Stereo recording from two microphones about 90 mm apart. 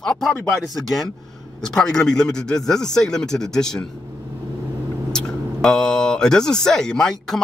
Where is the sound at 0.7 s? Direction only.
Centre (ahead or behind).